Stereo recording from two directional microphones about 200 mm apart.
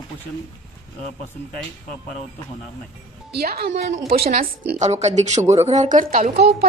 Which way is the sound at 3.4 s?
55° right (ahead or behind).